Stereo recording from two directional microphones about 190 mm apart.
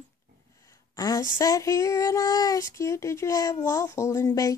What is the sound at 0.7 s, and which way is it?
Speech, 20° left (ahead or behind).